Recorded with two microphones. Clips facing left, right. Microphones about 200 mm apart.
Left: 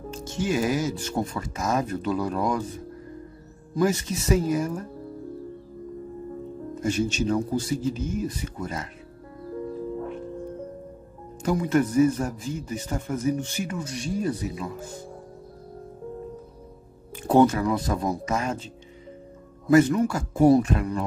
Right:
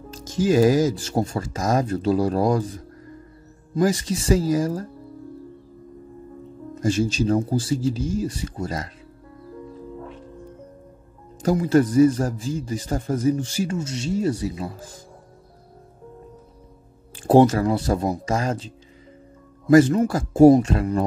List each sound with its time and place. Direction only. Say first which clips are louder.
0.2 s speech: right 6 dB; 90° right
0.5 s speech: right 8 dB; 35° right (ahead or behind)
3.7 s speech: right 2 dB; 30° right (ahead or behind)
7.2 s speech: right 3 dB; 30° right (ahead or behind)
7.9 s speech: right 4 dB; 90° right
8.2 s speech: right 3 dB; 30° right (ahead or behind)
11.4 s speech: right 4 dB; 30° right (ahead or behind)
17.3 s speech: right 3 dB; 30° right (ahead or behind)
19.7 s a man's voice: right 3 dB; 30° right (ahead or behind)